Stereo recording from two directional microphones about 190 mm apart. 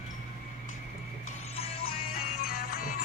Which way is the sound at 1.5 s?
30° left (ahead or behind).